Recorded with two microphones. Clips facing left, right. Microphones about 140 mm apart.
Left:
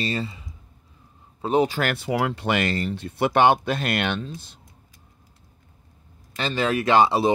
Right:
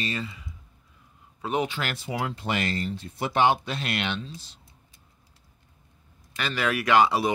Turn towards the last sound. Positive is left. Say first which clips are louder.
# left 3 dB
turn(degrees=25)  # may be behind; listen again after turning